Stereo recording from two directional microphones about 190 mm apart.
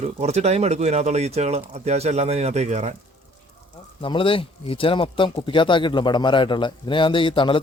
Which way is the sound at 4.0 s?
25° left (ahead or behind).